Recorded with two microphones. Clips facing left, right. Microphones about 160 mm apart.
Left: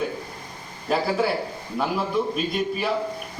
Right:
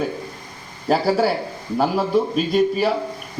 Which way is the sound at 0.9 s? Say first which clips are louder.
Right 5 dB; 35° right (ahead or behind).